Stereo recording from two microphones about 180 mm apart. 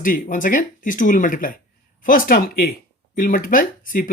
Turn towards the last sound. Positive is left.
turn(degrees=50)  # may be behind; listen again after turning